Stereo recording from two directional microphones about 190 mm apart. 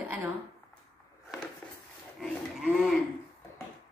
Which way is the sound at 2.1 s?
Centre (ahead or behind).